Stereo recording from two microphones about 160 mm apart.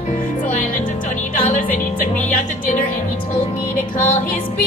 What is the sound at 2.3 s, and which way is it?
Music, 55° left (ahead or behind).